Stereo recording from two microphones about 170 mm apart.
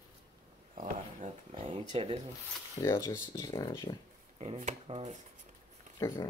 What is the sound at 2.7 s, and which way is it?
Speech, 15° left (ahead or behind).